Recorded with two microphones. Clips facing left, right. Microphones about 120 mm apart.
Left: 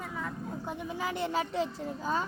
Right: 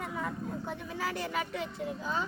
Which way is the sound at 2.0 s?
45° left (ahead or behind).